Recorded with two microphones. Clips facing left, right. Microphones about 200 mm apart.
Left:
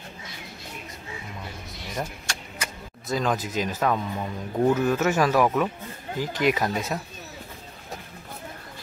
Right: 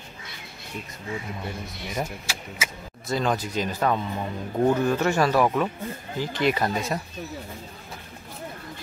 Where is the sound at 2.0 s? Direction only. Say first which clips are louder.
Right 1 dB; 5° right (ahead or behind).